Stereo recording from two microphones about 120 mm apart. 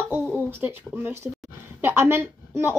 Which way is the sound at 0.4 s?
15° right (ahead or behind).